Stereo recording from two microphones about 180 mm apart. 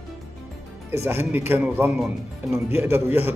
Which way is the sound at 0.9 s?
15° right (ahead or behind).